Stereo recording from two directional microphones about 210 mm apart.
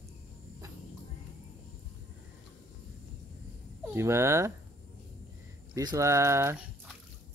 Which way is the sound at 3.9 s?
10° right (ahead or behind).